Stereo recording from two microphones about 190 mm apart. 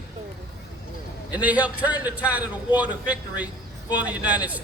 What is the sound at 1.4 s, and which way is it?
A man's voice, 5° right (ahead or behind).